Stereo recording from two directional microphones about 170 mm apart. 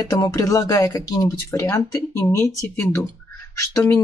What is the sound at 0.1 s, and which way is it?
A woman's voice, 20° left (ahead or behind).